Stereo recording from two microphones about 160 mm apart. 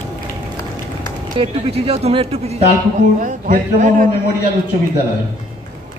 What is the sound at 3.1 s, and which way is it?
Speech, 55° right (ahead or behind).